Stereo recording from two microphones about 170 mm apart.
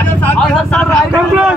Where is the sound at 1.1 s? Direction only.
10° right (ahead or behind).